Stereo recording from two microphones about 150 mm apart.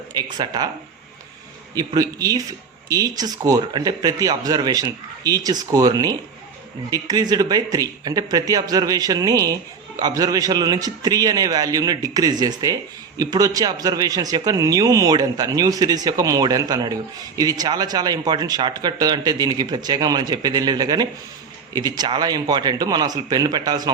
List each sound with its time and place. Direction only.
0.1 s a man's voice: 25° right (ahead or behind)
1.7 s a man's voice: 25° right (ahead or behind)